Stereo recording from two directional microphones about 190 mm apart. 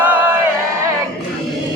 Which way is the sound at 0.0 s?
10° right (ahead or behind).